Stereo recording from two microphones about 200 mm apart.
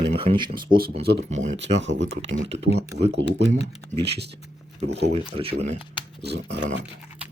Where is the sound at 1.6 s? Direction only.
65° right (ahead or behind).